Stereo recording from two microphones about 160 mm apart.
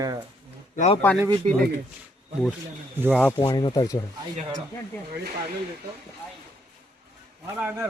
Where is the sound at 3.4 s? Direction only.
25° left (ahead or behind).